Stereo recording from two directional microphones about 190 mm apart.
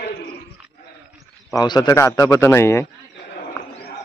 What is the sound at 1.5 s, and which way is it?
A man's voice, 20° left (ahead or behind).